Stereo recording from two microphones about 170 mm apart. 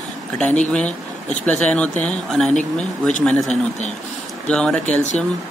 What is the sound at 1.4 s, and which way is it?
Speech, 10° left (ahead or behind).